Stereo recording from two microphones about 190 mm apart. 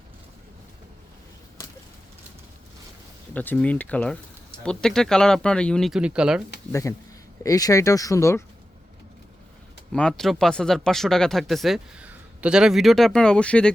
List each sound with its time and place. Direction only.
3.3 s speech: 10° left (ahead or behind)
6.7 s speech: 15° left (ahead or behind)
9.9 s speech: 5° left (ahead or behind)